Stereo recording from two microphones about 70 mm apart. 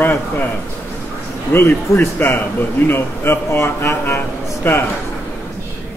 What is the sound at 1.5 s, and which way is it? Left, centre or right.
Speech, left.